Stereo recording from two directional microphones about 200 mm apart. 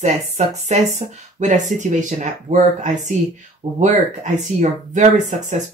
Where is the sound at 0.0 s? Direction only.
35° right (ahead or behind).